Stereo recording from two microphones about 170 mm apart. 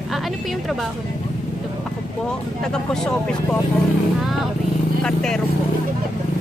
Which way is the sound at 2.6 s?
5° left (ahead or behind).